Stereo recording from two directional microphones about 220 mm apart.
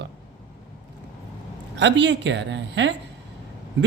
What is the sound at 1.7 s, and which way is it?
A woman's voice, 55° right (ahead or behind).